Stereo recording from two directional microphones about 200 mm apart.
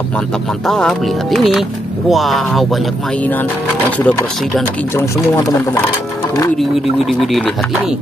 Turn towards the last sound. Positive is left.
turn(degrees=0)  # may be behind; listen again after turning